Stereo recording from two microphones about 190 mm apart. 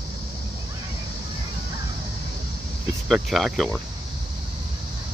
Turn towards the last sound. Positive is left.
turn(degrees=0)  # may be behind; listen again after turning